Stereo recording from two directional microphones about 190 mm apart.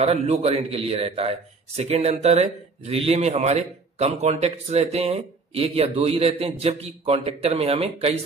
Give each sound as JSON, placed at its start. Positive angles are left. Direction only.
{"t": 0.0, "sound": "a man's voice", "side_deg": -35}